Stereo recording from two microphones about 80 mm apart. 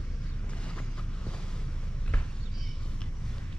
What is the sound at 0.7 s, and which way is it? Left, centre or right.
Vehicle, centre.